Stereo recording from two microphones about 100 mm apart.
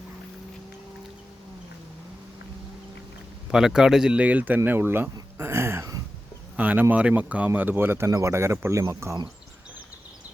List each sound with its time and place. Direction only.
3.5 s speech: 5° right (ahead or behind); by 5.0 s 20° right (ahead or behind)
5.4 s a sound: 25° right (ahead or behind)
6.6 s speech: 20° right (ahead or behind)